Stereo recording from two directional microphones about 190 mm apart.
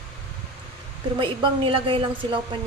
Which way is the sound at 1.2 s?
25° right (ahead or behind).